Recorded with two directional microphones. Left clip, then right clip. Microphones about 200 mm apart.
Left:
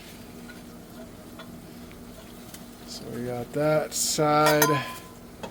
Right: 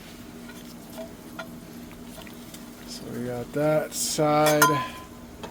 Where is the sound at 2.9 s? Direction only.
Centre (ahead or behind).